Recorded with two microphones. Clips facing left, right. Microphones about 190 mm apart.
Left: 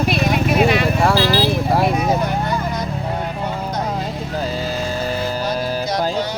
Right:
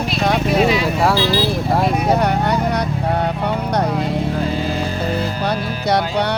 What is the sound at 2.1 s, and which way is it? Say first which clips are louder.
Vehicle: right 3 dB; 65° right (ahead or behind).